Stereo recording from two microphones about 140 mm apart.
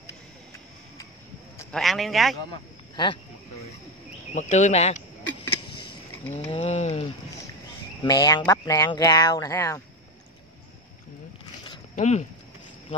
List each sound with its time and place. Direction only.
1.7 s a man's voice: centre (ahead or behind)
2.5 s speech: 35° left (ahead or behind)
4.4 s speech: 60° left (ahead or behind)
6.5 s a sound: 50° left (ahead or behind)
8.0 s speech: 30° left (ahead or behind)
11.9 s speech: 55° left (ahead or behind)